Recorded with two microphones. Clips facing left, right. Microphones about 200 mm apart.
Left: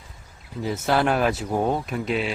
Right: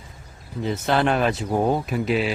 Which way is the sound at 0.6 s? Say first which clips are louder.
Right 1 dB; 5° left (ahead or behind).